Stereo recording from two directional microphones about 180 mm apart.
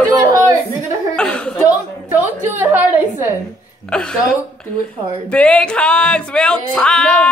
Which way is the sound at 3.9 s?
5° left (ahead or behind).